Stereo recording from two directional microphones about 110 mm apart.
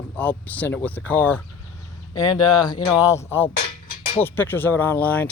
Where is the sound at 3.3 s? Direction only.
20° left (ahead or behind).